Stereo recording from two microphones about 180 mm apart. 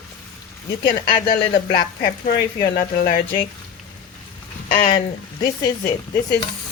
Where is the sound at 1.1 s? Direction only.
55° left (ahead or behind).